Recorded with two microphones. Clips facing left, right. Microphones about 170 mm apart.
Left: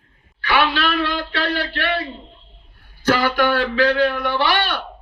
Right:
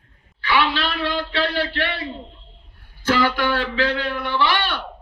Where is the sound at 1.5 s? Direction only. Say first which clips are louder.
Left 2 dB; 45° left (ahead or behind).